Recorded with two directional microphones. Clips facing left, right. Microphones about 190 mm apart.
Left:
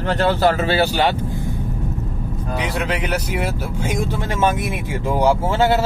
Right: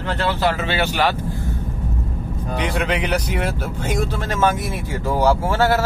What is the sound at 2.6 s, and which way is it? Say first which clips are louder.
A man's voice: right 2 dB; centre (ahead or behind).